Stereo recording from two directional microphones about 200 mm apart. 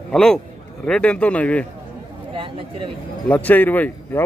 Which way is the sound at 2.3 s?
25° right (ahead or behind).